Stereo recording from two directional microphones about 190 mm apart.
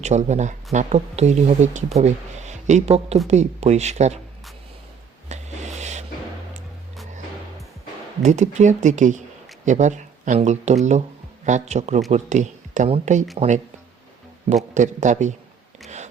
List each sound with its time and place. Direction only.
0.0 s speech: 35° right (ahead or behind)
5.3 s a sound: 35° right (ahead or behind)
8.2 s speech: 40° right (ahead or behind)